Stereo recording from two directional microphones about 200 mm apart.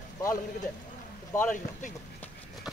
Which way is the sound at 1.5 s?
40° left (ahead or behind).